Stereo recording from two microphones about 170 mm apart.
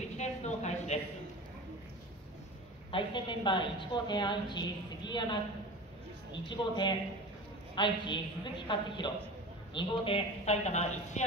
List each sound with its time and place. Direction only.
0.2 s a sound: 40° left (ahead or behind)
2.9 s a woman's voice: 30° left (ahead or behind)
6.5 s a woman's voice: 25° left (ahead or behind)